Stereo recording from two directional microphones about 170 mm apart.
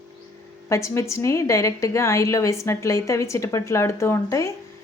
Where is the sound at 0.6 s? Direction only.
15° left (ahead or behind).